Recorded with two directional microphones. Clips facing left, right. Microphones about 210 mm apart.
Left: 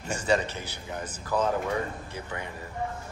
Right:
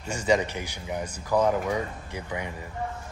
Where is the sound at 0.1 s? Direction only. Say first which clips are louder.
Right 2 dB; 15° right (ahead or behind).